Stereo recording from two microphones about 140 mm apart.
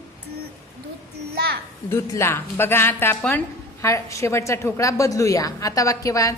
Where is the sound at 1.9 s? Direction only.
20° left (ahead or behind).